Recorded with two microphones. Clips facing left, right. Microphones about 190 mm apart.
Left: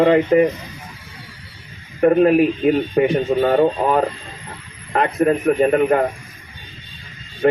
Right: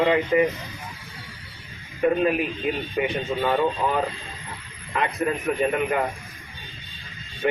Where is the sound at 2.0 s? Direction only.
55° left (ahead or behind).